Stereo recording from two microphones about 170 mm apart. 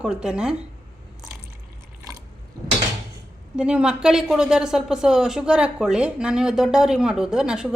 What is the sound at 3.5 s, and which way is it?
Speech, 5° right (ahead or behind).